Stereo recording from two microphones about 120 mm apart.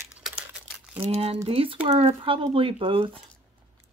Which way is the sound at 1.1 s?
60° right (ahead or behind).